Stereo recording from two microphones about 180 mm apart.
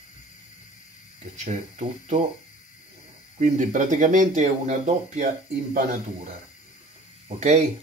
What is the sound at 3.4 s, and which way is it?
Speech, 45° right (ahead or behind).